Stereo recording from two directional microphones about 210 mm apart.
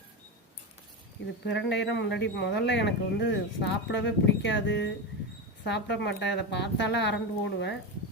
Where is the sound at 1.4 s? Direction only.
55° left (ahead or behind).